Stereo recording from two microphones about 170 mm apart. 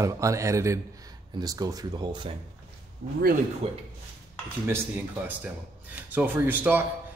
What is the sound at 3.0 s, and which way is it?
Speech, 75° right (ahead or behind).